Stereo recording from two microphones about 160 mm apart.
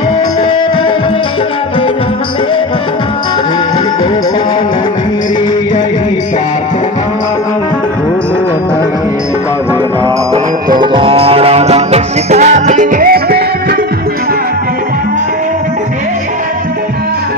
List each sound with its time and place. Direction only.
10.8 s music: 30° right (ahead or behind); by 13.7 s 70° right (ahead or behind)